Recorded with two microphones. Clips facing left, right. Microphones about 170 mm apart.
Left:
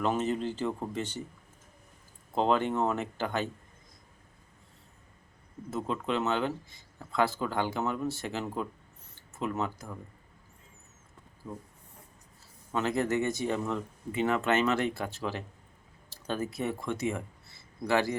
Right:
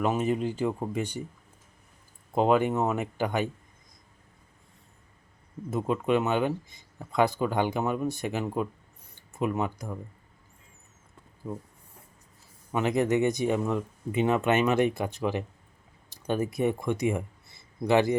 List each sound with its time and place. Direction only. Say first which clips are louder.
0.0 s speech: right 3 dB; 10° right (ahead or behind)
2.3 s speech: right 4 dB; 10° right (ahead or behind)
5.7 s speech: right 6 dB; 15° right (ahead or behind)
12.7 s speech: right 4 dB; 15° right (ahead or behind)